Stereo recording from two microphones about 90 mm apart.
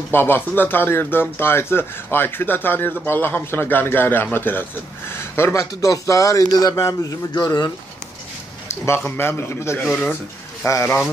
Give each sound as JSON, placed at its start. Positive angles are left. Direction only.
{"t": 0.1, "sound": "speech", "side_deg": 25}
{"t": 8.6, "sound": "speech", "side_deg": 30}